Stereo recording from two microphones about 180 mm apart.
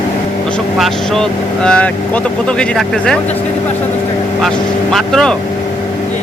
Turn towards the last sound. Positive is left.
turn(degrees=0)  # may be behind; listen again after turning